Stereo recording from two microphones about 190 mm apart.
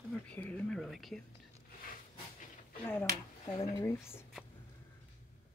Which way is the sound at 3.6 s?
15° left (ahead or behind).